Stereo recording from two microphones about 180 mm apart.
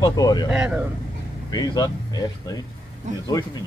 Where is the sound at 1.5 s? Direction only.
20° left (ahead or behind).